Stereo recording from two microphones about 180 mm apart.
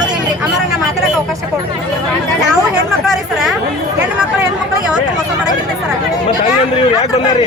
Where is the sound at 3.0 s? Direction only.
Centre (ahead or behind).